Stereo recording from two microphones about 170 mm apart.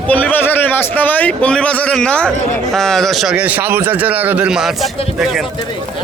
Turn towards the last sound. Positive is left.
turn(degrees=-5)  # may be behind; listen again after turning